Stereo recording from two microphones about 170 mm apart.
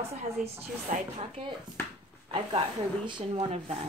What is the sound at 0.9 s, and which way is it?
Speech, 45° right (ahead or behind).